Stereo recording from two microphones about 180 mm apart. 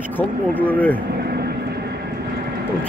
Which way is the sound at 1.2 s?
65° right (ahead or behind).